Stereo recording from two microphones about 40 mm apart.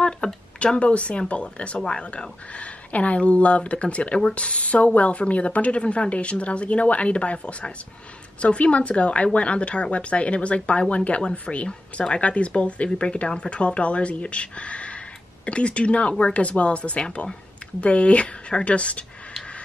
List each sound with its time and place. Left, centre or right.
0.0 s a sound: left
0.7 s speech: left
2.0 s speech: left